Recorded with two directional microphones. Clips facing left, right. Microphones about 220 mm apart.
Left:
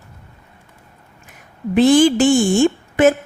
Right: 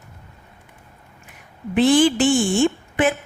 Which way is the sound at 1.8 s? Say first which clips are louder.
Left 4 dB; 40° left (ahead or behind).